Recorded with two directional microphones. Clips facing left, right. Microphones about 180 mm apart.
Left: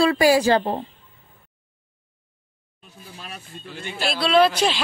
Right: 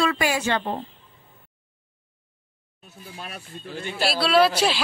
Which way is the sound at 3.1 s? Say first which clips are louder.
Right 1 dB; 50° right (ahead or behind).